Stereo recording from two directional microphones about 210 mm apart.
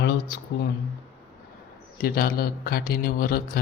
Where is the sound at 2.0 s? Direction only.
45° left (ahead or behind).